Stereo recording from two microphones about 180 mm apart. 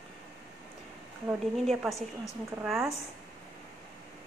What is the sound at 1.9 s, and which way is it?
Speech, 20° left (ahead or behind).